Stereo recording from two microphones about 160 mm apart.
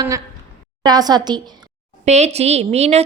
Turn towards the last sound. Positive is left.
turn(degrees=-40)  # may be behind; listen again after turning